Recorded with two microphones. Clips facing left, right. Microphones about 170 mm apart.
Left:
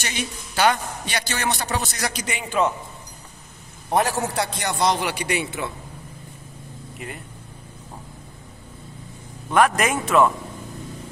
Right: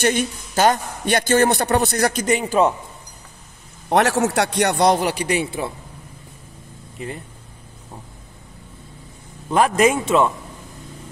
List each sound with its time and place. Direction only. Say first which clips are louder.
0.0 s a man's voice: right 10 dB; 50° right (ahead or behind)
3.9 s a man's voice: right 5 dB; 85° right; by 4.9 s 65° right (ahead or behind)
4.9 s a man's voice: right 5 dB; 35° right (ahead or behind)
9.5 s a man's voice: right 3 dB; 30° right (ahead or behind)